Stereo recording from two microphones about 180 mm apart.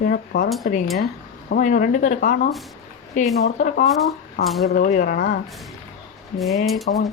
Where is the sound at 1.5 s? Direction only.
45° left (ahead or behind).